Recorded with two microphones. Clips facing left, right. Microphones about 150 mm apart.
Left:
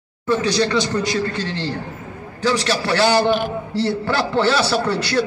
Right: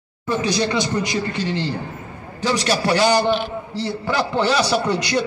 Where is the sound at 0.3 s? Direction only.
15° right (ahead or behind).